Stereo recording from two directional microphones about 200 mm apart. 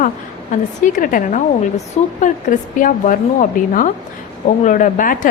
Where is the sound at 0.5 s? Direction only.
40° left (ahead or behind).